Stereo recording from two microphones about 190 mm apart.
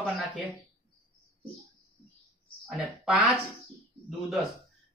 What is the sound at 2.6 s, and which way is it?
Speech, centre (ahead or behind).